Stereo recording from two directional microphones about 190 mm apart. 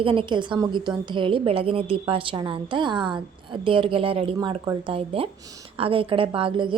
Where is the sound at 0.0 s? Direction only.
25° right (ahead or behind).